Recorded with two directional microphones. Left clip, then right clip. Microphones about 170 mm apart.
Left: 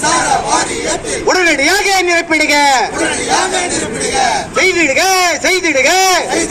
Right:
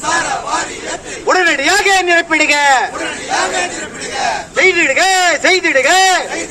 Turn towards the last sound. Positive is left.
turn(degrees=40)  # may be behind; listen again after turning